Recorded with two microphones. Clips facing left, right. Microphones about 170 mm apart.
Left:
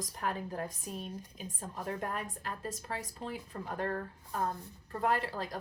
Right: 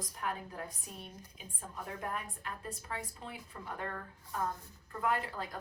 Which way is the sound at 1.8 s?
40° left (ahead or behind).